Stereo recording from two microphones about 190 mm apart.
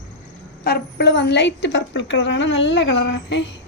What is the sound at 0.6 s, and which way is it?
A woman's voice, 55° left (ahead or behind).